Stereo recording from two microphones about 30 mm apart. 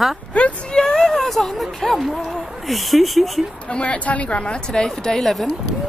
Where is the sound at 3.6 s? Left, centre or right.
Left.